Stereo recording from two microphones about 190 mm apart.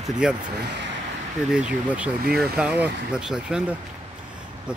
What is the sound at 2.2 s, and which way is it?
Speech, 55° right (ahead or behind).